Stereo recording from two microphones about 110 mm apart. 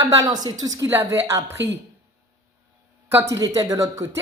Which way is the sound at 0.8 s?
20° right (ahead or behind).